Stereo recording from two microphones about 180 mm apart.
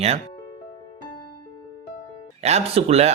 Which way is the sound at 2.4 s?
35° right (ahead or behind).